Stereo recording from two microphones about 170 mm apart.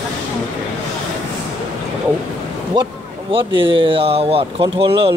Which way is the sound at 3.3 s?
30° right (ahead or behind).